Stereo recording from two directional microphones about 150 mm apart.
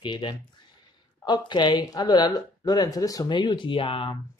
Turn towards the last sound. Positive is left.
turn(degrees=35)  # may be behind; listen again after turning